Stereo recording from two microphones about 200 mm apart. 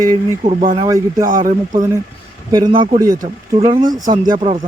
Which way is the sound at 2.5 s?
20° right (ahead or behind).